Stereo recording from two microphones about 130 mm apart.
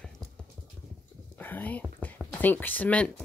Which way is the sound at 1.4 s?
15° left (ahead or behind).